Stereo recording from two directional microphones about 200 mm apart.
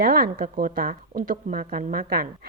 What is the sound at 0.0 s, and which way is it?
A woman's voice, 50° right (ahead or behind).